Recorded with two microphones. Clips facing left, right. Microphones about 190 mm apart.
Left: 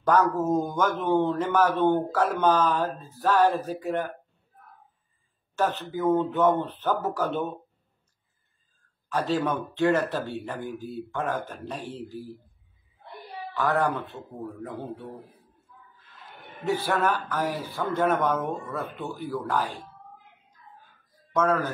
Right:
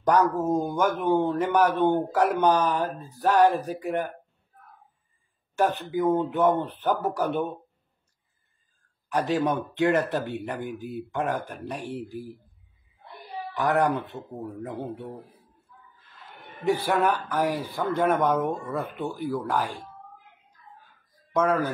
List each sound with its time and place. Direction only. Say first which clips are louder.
0.0 s speech: even; 15° right (ahead or behind)
5.6 s speech: right 2 dB; 15° right (ahead or behind)
9.1 s speech: right 1 dB; 15° right (ahead or behind)
13.6 s speech: right 2 dB; 15° right (ahead or behind)
16.6 s speech: right 2 dB; 15° right (ahead or behind)
21.3 s speech: right 1 dB; 10° right (ahead or behind)